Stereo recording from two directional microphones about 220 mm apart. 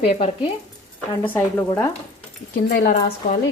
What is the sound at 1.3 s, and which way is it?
Speech, 10° left (ahead or behind).